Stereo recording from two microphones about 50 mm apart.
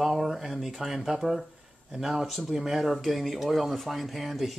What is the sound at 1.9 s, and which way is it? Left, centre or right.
Speech, centre.